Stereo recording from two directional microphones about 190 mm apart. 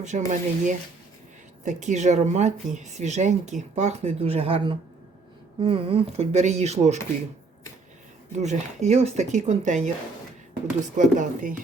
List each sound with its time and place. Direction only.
0.3 s speech: 40° right (ahead or behind)
8.4 s speech: 35° right (ahead or behind)
10.9 s speech: 45° right (ahead or behind)